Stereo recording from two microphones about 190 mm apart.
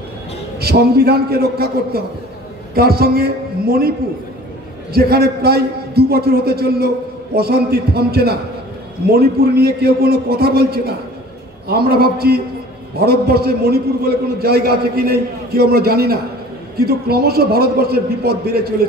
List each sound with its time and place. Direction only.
0.6 s a man's voice: 55° right (ahead or behind)
4.9 s a man's voice: 55° right (ahead or behind)